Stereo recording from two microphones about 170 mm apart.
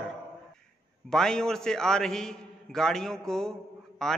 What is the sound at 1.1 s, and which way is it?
A man's voice, 5° left (ahead or behind).